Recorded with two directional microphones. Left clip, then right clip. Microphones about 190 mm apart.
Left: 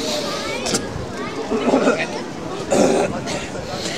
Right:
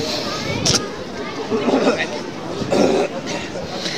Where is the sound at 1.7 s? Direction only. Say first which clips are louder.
Left 1 dB; 5° right (ahead or behind).